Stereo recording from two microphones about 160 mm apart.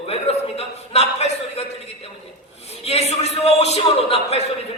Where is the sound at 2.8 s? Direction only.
40° left (ahead or behind).